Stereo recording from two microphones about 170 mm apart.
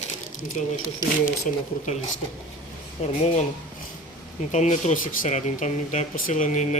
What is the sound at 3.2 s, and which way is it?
Speech, 40° left (ahead or behind).